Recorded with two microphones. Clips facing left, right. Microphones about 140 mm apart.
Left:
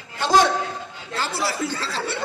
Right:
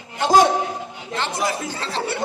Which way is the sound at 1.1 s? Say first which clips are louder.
Right 2 dB; 15° right (ahead or behind).